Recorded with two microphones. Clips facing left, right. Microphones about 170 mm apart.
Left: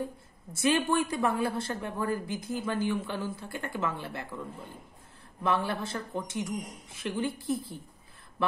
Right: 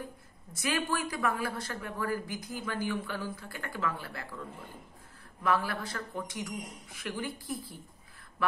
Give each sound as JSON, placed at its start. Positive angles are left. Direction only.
{"t": 0.5, "sound": "a man's voice", "side_deg": 30}